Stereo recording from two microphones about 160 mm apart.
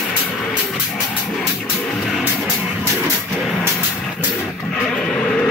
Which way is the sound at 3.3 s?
Centre (ahead or behind).